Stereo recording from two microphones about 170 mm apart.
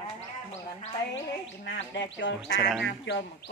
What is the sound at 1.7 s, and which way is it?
Speech, 90° left.